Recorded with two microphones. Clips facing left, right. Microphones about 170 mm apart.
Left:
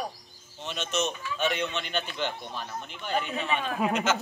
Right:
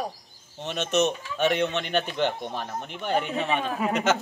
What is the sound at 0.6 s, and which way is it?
Speech, 60° right (ahead or behind).